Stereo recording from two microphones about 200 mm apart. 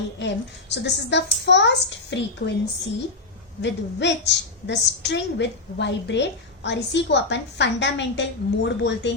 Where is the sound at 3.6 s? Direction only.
60° left (ahead or behind).